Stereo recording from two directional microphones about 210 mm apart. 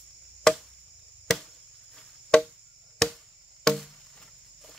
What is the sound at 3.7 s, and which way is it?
Chop, centre (ahead or behind).